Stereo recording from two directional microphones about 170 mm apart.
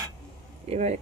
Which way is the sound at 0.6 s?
40° right (ahead or behind).